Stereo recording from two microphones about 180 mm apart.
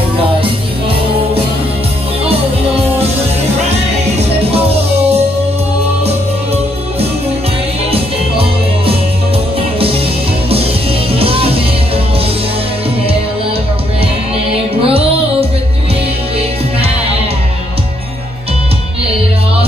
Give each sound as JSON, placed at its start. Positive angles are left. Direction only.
{"t": 0.4, "sound": "music", "side_deg": -30}
{"t": 7.9, "sound": "music", "side_deg": -30}
{"t": 14.5, "sound": "music", "side_deg": -30}